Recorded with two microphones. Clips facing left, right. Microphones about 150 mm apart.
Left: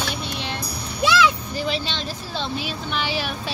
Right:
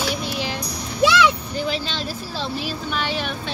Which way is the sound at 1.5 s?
Centre (ahead or behind).